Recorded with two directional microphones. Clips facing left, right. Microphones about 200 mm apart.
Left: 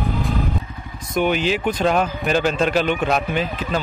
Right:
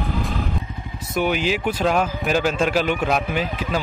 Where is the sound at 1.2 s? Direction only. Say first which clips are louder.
Left 2 dB; 10° right (ahead or behind).